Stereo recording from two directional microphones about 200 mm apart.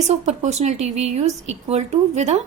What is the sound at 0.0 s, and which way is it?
A woman's voice, 35° right (ahead or behind).